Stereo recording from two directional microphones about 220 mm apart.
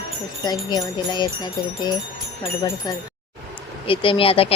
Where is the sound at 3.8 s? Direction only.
25° left (ahead or behind).